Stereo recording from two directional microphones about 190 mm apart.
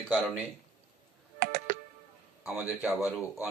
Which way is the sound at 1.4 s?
45° right (ahead or behind).